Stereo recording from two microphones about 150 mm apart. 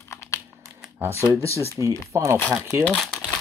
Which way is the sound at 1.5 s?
15° left (ahead or behind).